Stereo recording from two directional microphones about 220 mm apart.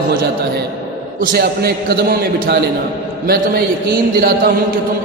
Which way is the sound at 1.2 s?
45° right (ahead or behind).